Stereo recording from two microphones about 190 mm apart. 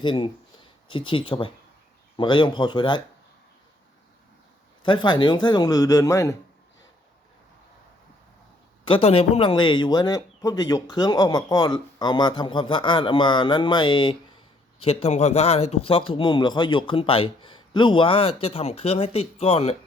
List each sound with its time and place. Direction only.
0.0 s a man's voice: 25° left (ahead or behind)
4.8 s a man's voice: 25° left (ahead or behind)
8.8 s a man's voice: 30° left (ahead or behind)